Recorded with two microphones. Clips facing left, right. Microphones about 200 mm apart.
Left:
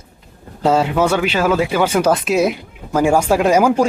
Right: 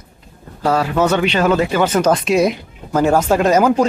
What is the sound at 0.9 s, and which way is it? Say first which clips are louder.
Speech: right 1 dB; 10° left (ahead or behind).